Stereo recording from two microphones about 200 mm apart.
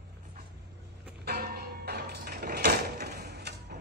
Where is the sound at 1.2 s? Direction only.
50° right (ahead or behind).